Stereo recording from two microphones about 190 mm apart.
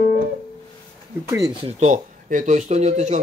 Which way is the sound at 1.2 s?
15° right (ahead or behind).